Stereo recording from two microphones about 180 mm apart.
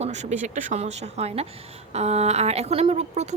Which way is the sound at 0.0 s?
40° right (ahead or behind).